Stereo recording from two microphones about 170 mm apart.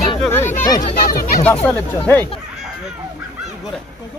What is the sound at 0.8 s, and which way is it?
Speech, 50° left (ahead or behind).